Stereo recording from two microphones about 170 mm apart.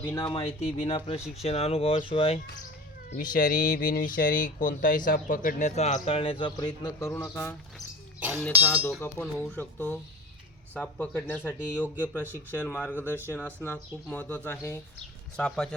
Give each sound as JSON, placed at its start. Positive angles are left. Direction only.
{"t": 0.0, "sound": "speech", "side_deg": 15}
{"t": 0.3, "sound": "speech", "side_deg": 35}
{"t": 3.2, "sound": "a man's voice", "side_deg": 55}